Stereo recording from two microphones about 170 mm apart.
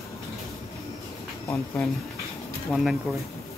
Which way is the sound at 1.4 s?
15° left (ahead or behind).